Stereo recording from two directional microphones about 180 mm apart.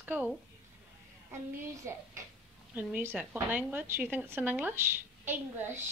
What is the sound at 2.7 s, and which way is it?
A woman's voice, 10° right (ahead or behind).